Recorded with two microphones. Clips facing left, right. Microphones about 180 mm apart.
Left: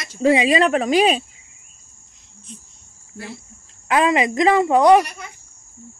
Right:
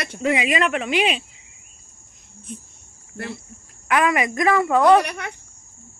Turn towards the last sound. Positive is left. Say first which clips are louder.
# right 1 dB
turn(degrees=-70)  # may be behind; listen again after turning